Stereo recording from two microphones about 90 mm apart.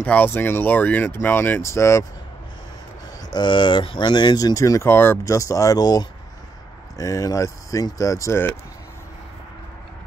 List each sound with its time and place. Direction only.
0.0 s speech: 20° left (ahead or behind); by 2.0 s 35° left (ahead or behind)
3.3 s speech: 60° left (ahead or behind); by 4.9 s 35° left (ahead or behind)
4.9 s speech: 25° left (ahead or behind)
5.2 s speech: 35° left (ahead or behind)